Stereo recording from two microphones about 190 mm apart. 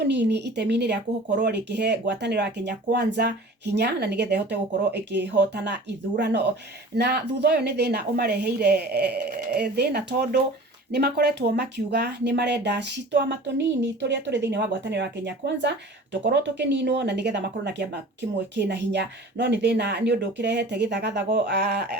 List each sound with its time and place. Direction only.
0.0 s speech: 65° right (ahead or behind)